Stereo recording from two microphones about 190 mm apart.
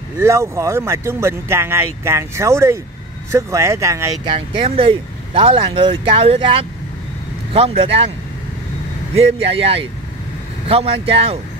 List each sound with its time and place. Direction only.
0.2 s speech: 15° right (ahead or behind)
4.6 s speech: 30° right (ahead or behind)
9.1 s speech: 30° right (ahead or behind)